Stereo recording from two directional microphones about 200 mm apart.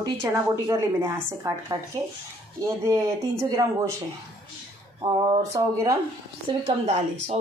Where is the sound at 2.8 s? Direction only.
15° right (ahead or behind).